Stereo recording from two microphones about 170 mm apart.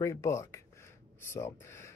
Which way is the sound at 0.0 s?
15° left (ahead or behind).